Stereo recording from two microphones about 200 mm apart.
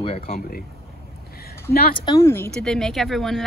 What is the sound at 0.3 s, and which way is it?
Speech, 45° left (ahead or behind).